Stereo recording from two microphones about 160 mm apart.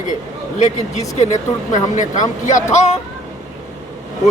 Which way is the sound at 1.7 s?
50° left (ahead or behind).